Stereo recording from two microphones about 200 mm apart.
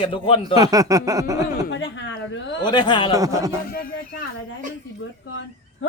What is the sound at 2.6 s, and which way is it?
Speech, 20° left (ahead or behind).